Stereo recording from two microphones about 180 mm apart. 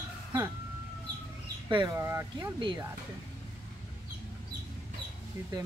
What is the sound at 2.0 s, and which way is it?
Speech, 15° right (ahead or behind).